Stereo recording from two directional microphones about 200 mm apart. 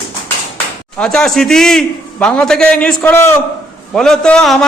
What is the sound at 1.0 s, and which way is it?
A man's voice, 5° left (ahead or behind).